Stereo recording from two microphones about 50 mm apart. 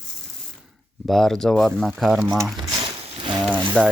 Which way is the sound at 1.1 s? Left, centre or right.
Centre.